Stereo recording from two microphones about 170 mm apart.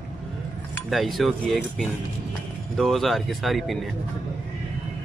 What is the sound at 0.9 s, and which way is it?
Speech, centre (ahead or behind).